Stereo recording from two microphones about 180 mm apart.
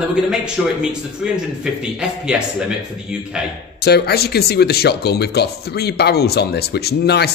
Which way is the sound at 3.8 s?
65° left (ahead or behind).